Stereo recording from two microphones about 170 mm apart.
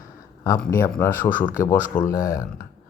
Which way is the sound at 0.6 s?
15° left (ahead or behind).